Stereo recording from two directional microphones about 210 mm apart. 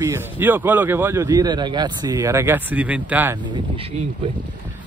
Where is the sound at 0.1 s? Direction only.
10° right (ahead or behind).